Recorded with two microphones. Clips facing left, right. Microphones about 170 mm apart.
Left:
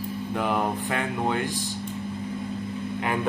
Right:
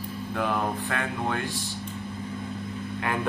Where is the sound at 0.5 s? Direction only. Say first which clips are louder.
Left 2 dB; 15° left (ahead or behind).